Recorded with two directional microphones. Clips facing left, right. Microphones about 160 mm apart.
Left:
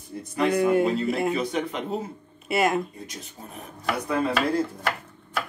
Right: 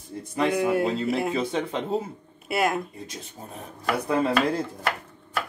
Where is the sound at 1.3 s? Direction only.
25° right (ahead or behind).